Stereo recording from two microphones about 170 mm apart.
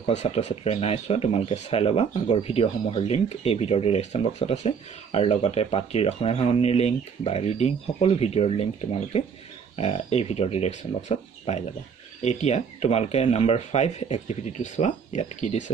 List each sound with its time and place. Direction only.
0.0 s speech: 45° left (ahead or behind)